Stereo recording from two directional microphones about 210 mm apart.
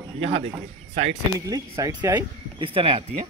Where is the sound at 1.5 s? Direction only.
15° right (ahead or behind).